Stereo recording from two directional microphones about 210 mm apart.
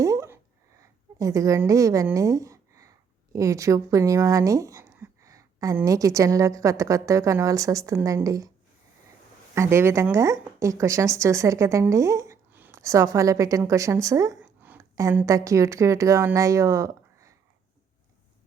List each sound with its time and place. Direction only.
0.0 s a sound: 15° right (ahead or behind)
0.8 s a woman's voice: 15° right (ahead or behind)
9.6 s speech: 10° right (ahead or behind)